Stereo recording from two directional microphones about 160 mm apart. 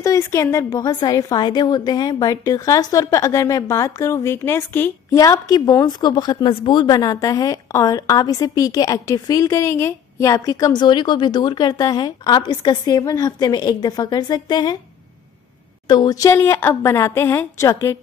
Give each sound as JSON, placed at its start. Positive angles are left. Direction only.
{"t": 0.0, "sound": "a woman's voice", "side_deg": 20}
{"t": 15.9, "sound": "a woman's voice", "side_deg": 25}